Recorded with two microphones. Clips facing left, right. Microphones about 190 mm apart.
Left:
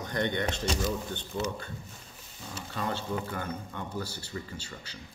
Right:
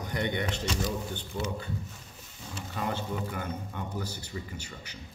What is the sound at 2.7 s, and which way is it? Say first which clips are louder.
Speech: even; 15° right (ahead or behind).